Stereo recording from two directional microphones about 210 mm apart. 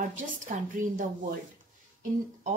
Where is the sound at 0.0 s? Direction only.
40° right (ahead or behind).